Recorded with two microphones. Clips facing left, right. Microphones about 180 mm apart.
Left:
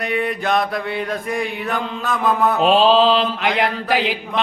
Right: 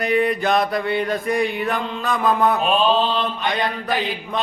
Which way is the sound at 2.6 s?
90° left.